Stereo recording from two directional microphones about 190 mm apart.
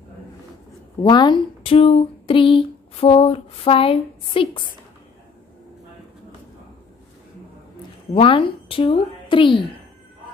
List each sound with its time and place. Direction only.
1.0 s speech: 25° left (ahead or behind)
8.1 s speech: 30° left (ahead or behind)